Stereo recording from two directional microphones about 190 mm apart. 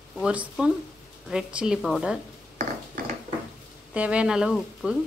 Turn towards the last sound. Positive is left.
turn(degrees=-5)  # may be behind; listen again after turning